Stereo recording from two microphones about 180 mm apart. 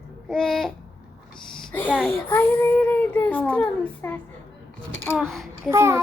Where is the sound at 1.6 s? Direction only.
10° left (ahead or behind).